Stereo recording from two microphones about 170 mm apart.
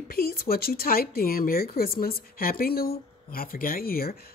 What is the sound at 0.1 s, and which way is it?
Speech, 60° left (ahead or behind).